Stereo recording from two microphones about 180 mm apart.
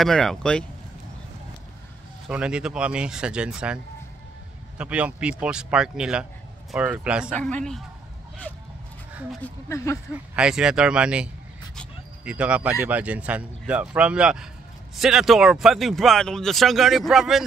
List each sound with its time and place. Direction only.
0.0 s speech: centre (ahead or behind)
2.2 s speech: 5° right (ahead or behind)
7.3 s speech: 5° left (ahead or behind)
9.4 s speech: 15° left (ahead or behind)
10.1 s speech: 5° right (ahead or behind)
12.3 s speech: 5° right (ahead or behind)